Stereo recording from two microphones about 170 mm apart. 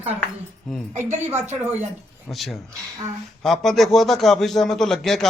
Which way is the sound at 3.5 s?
Centre (ahead or behind).